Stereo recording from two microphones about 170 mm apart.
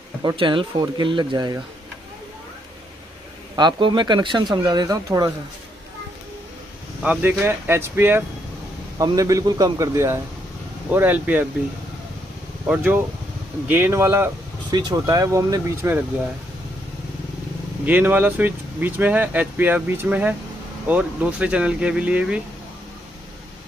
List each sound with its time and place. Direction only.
0.2 s speech: 25° right (ahead or behind)
3.5 s speech: 25° right (ahead or behind)
7.0 s speech: 10° right (ahead or behind)
12.6 s speech: 10° right (ahead or behind)
17.8 s speech: 10° right (ahead or behind)